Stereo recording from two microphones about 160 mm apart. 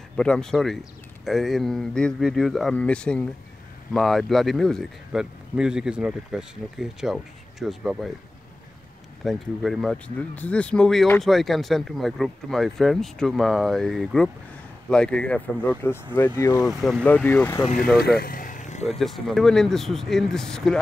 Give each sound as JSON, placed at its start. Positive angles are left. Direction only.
{"t": 0.2, "sound": "speech", "side_deg": 5}
{"t": 9.2, "sound": "speech", "side_deg": 0}
{"t": 17.9, "sound": "vehicle", "side_deg": 75}
{"t": 18.9, "sound": "speech", "side_deg": 0}